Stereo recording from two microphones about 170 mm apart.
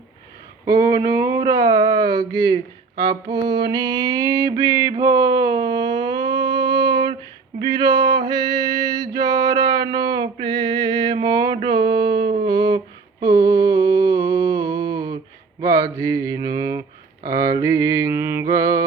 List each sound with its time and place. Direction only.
0.9 s speech: 20° right (ahead or behind)
3.1 s music: 25° right (ahead or behind)
7.8 s male singing: 25° right (ahead or behind)
12.3 s humming: 25° right (ahead or behind)
13.4 s mantra: 20° right (ahead or behind)
13.8 s a sound: 70° right (ahead or behind)
14.1 s a sound: 20° right (ahead or behind)
15.6 s mantra: 20° right (ahead or behind)